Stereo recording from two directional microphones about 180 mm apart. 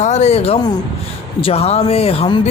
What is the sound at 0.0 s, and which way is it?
A man's voice, 40° left (ahead or behind).